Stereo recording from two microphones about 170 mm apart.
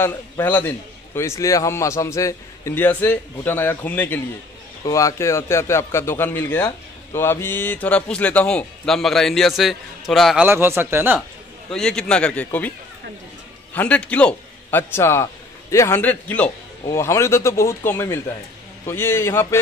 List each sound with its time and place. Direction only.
0.0 s a man's voice: 10° left (ahead or behind)
10.4 s speech: 15° right (ahead or behind)
11.7 s a man's voice: 5° left (ahead or behind)
13.7 s a man's voice: 5° left (ahead or behind)